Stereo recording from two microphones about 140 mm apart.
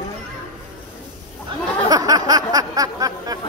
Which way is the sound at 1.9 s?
25° right (ahead or behind).